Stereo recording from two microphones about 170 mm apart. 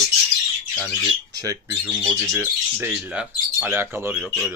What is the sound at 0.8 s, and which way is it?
Speech, 20° right (ahead or behind).